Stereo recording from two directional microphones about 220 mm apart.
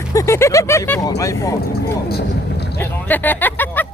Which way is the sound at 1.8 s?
45° left (ahead or behind).